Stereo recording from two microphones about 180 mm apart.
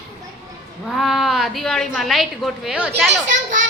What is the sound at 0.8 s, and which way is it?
A woman's voice, centre (ahead or behind).